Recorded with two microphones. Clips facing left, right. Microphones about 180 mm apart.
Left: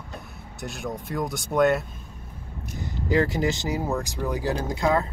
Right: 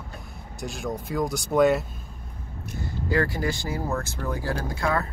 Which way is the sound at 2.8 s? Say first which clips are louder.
Left 2 dB; 20° left (ahead or behind).